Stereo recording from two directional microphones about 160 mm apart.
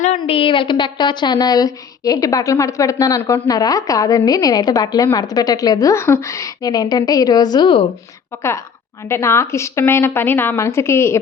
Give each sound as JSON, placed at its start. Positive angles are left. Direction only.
{"t": 0.2, "sound": "a woman's voice", "side_deg": 35}
{"t": 8.4, "sound": "a woman's voice", "side_deg": 15}